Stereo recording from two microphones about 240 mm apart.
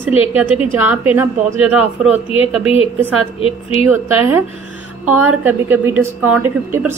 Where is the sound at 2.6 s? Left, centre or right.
Left.